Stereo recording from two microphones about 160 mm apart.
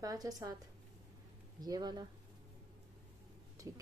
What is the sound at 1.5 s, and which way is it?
Speech, 25° right (ahead or behind).